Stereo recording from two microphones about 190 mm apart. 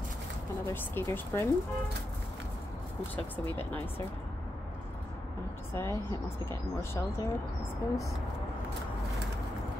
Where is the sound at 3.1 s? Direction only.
10° left (ahead or behind).